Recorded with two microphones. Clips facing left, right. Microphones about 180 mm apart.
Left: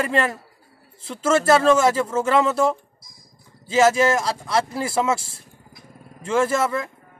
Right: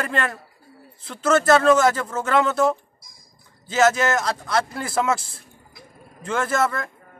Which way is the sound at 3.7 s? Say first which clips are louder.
Left 2 dB; 30° left (ahead or behind).